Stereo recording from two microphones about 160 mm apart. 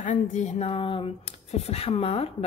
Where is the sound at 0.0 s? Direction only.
50° left (ahead or behind).